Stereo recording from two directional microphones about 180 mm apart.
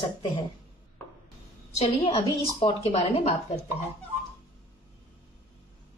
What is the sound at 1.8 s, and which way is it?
A woman's voice, 30° left (ahead or behind).